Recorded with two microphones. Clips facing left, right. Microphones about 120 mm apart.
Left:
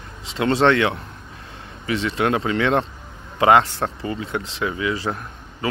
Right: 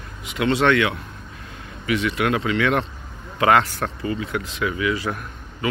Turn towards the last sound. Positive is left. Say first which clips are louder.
# even
turn(degrees=25)  # may be behind; listen again after turning